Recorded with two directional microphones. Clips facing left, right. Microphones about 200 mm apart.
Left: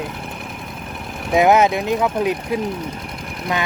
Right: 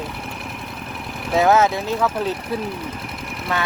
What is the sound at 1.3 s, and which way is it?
Speech, 15° left (ahead or behind).